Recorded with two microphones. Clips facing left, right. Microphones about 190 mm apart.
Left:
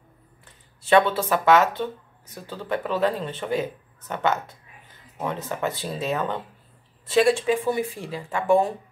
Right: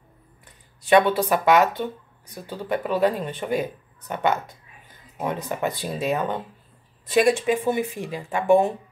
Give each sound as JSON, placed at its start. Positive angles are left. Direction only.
{"t": 0.8, "sound": "speech", "side_deg": -15}